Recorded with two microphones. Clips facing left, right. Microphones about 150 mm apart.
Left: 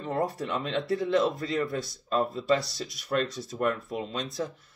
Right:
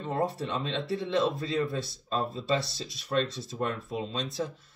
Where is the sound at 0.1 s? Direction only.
25° right (ahead or behind).